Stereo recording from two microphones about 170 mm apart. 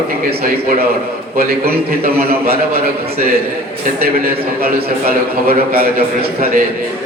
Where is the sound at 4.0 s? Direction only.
60° right (ahead or behind).